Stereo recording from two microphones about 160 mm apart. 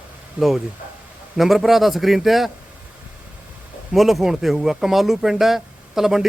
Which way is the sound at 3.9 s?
Centre (ahead or behind).